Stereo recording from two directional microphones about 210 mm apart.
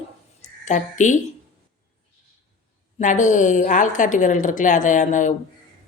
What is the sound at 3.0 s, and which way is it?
Speech, 35° left (ahead or behind).